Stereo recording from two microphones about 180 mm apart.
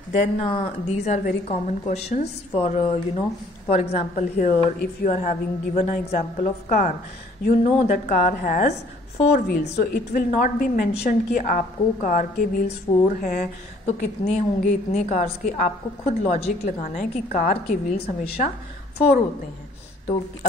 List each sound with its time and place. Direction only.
0.4 s a woman's voice: 35° left (ahead or behind)
2.5 s a woman's voice: 30° left (ahead or behind); by 13.5 s 50° left (ahead or behind)
13.8 s a woman's voice: 40° left (ahead or behind); by 18.0 s 55° left (ahead or behind)
18.0 s a woman's voice: 30° left (ahead or behind)
18.9 s a woman's voice: 60° left (ahead or behind)